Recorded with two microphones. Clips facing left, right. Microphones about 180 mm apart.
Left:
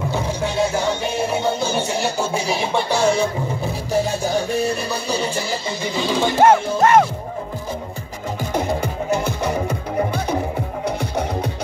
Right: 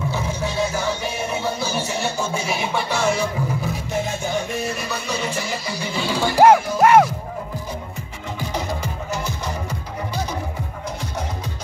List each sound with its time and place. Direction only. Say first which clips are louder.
0.1 s music: left 3 dB; 30° left (ahead or behind)
5.9 s speech: left 1 dB; 20° left (ahead or behind)
6.8 s music: right 1 dB; 10° right (ahead or behind)
8.4 s music: left 5 dB; 55° left (ahead or behind)